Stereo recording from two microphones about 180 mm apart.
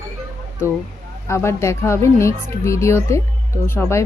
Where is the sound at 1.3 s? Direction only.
15° left (ahead or behind).